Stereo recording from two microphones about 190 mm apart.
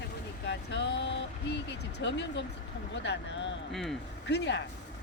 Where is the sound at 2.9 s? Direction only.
70° left (ahead or behind).